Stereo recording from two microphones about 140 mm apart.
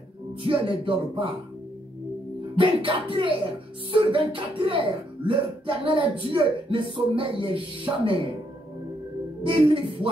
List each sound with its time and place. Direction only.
0.4 s speech: 40° right (ahead or behind)
2.5 s speech: 40° right (ahead or behind)
9.5 s speech: 40° right (ahead or behind)